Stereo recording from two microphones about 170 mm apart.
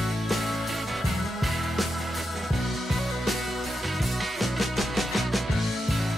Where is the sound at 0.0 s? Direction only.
Centre (ahead or behind).